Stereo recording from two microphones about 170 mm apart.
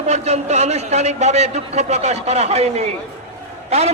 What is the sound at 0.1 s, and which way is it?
A man's voice, 40° right (ahead or behind).